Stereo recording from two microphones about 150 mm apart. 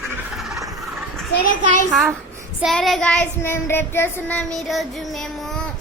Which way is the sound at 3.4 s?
15° left (ahead or behind).